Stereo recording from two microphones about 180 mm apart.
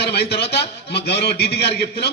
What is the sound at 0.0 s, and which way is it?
A man's voice, 65° left (ahead or behind).